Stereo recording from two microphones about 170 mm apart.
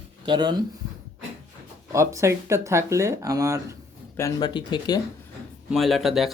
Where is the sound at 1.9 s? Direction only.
15° right (ahead or behind).